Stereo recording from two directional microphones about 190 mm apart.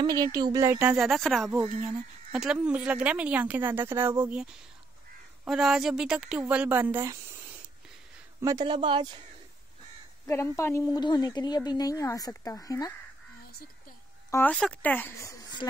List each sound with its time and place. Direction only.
0.0 s speech: 20° right (ahead or behind)
0.7 s speech: 5° right (ahead or behind)
5.4 s speech: centre (ahead or behind)
8.4 s speech: 20° right (ahead or behind)
10.2 s a woman's voice: 15° left (ahead or behind)
14.3 s speech: 5° left (ahead or behind)